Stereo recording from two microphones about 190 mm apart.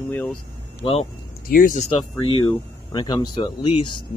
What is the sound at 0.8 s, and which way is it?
Speech, 30° left (ahead or behind).